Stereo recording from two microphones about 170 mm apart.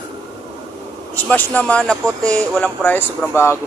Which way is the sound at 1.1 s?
10° left (ahead or behind).